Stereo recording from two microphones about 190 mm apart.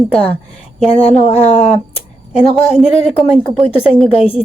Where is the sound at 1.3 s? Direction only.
35° left (ahead or behind).